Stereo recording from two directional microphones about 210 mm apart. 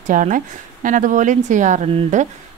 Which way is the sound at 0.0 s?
40° right (ahead or behind).